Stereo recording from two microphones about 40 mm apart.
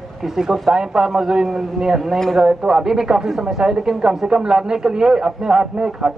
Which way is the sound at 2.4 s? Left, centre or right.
Right.